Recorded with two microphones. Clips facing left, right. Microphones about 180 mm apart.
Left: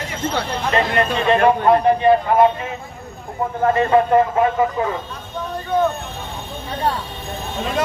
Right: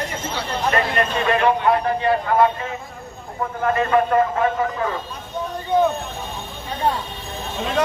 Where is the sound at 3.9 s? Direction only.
25° left (ahead or behind).